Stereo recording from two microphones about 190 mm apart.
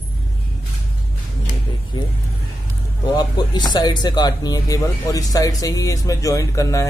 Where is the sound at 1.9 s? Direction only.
25° left (ahead or behind).